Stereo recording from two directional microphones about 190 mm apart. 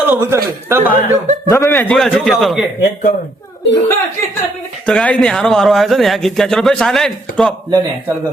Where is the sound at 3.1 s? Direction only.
45° left (ahead or behind).